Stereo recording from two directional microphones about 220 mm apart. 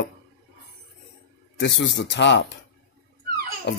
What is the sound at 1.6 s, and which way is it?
Speech, 55° left (ahead or behind).